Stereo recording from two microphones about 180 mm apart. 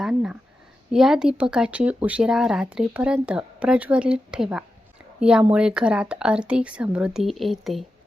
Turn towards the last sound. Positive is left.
turn(degrees=0)  # may be behind; listen again after turning